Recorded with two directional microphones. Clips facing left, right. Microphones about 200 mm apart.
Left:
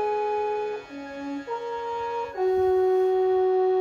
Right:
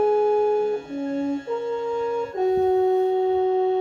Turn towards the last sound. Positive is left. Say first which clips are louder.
# even
turn(degrees=-25)  # may be behind; listen again after turning